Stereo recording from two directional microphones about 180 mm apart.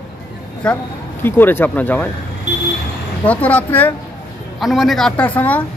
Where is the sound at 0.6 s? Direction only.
5° left (ahead or behind).